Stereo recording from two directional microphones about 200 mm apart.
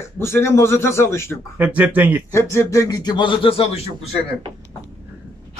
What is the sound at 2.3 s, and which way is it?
A man's voice, 15° left (ahead or behind).